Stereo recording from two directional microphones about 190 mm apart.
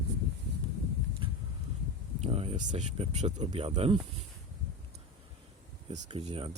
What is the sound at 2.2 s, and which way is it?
Speech, 35° right (ahead or behind).